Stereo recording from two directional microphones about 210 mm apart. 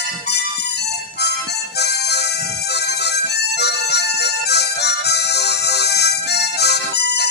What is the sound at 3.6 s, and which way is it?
Harmonica, 50° left (ahead or behind).